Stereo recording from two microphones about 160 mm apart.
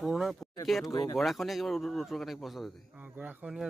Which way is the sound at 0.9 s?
20° left (ahead or behind).